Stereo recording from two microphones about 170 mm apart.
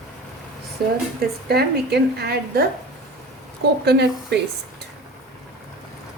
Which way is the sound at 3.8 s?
75° right (ahead or behind).